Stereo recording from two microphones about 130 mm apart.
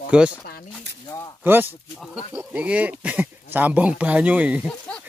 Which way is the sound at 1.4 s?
15° right (ahead or behind).